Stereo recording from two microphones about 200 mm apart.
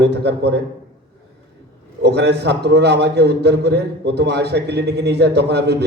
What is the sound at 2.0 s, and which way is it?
A man's voice, 55° right (ahead or behind).